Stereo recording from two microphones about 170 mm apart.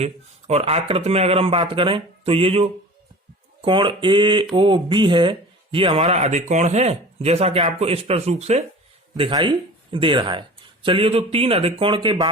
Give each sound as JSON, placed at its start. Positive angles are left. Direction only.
{"t": 0.0, "sound": "speech", "side_deg": -35}
{"t": 9.1, "sound": "speech", "side_deg": -30}